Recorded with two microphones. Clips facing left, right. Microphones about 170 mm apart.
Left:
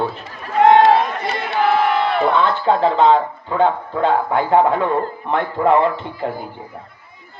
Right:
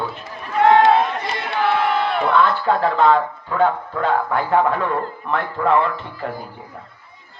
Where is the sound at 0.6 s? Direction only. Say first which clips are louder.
Left 2 dB; 20° left (ahead or behind).